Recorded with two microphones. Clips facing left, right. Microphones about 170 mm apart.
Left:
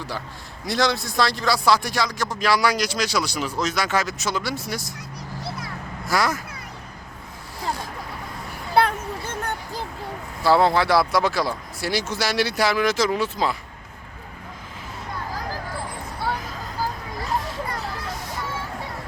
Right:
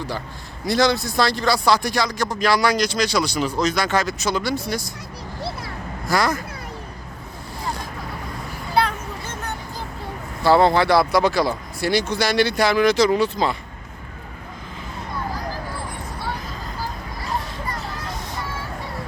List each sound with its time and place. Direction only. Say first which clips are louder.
0.6 s speech: right 4 dB; centre (ahead or behind)
5.4 s vehicle: right 4 dB; 30° right (ahead or behind)
6.1 s speech: right 2 dB; 5° left (ahead or behind)
8.7 s a sound: left 1 dB; 55° left (ahead or behind)
10.4 s speech: right 2 dB; centre (ahead or behind)